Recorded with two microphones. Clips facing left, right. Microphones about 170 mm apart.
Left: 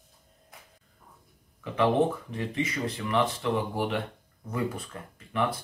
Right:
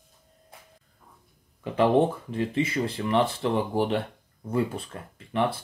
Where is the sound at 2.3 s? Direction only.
30° right (ahead or behind).